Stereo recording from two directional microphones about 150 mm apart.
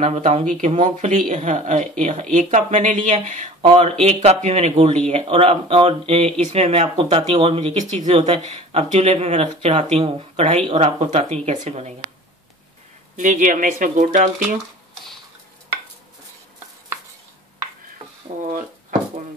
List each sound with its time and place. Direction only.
0.0 s speech: 50° right (ahead or behind)
7.8 s speech: 50° right (ahead or behind)
13.1 s speech: 60° right (ahead or behind)
18.3 s a sound: 55° right (ahead or behind)